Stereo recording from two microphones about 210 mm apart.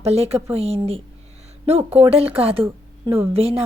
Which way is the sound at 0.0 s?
30° right (ahead or behind).